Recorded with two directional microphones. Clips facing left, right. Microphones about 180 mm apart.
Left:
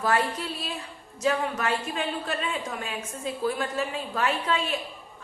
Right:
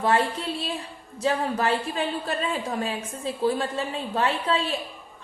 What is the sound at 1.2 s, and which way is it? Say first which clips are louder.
A woman's voice: right 2 dB; 30° right (ahead or behind).